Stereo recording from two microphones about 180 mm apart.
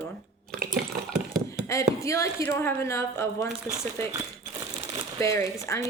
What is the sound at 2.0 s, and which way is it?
Speech, 15° left (ahead or behind).